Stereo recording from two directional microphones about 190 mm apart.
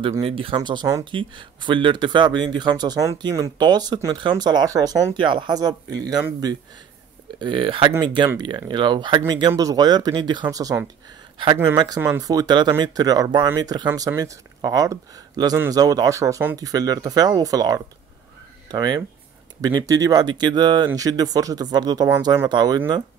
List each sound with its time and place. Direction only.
0.0 s speech: 25° right (ahead or behind)